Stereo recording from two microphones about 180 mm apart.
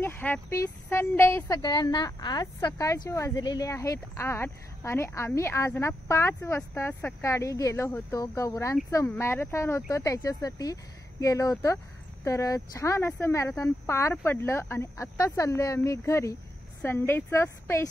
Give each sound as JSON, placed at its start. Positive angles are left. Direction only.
{"t": 0.0, "sound": "a woman's voice", "side_deg": 10}